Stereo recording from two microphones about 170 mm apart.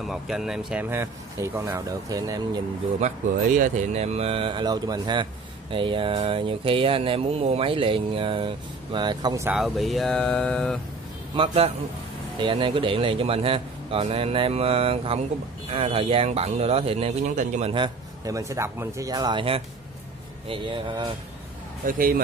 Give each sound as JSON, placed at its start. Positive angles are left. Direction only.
{"t": 0.0, "sound": "speech", "side_deg": 0}
{"t": 3.0, "sound": "speech", "side_deg": -50}
{"t": 9.5, "sound": "speech", "side_deg": 0}
{"t": 11.3, "sound": "speech", "side_deg": -35}
{"t": 21.8, "sound": "speech", "side_deg": -55}